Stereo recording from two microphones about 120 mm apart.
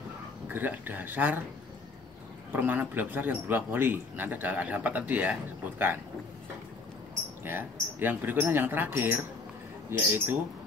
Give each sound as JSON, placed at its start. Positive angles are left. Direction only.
{"t": 0.5, "sound": "speech", "side_deg": -15}
{"t": 2.5, "sound": "speech", "side_deg": -15}
{"t": 8.0, "sound": "speech", "side_deg": -15}